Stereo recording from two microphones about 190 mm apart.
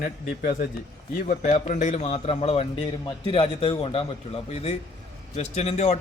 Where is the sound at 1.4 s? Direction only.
40° left (ahead or behind).